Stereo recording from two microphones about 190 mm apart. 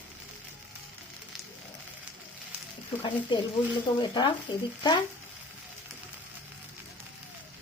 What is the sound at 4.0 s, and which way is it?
Speech, 25° left (ahead or behind).